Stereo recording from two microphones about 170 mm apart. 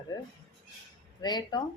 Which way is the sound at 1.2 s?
25° left (ahead or behind).